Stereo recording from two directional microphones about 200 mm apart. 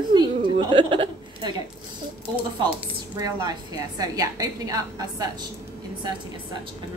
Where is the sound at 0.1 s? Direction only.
25° right (ahead or behind).